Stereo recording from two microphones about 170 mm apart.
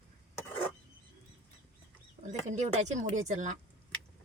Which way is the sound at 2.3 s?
45° right (ahead or behind).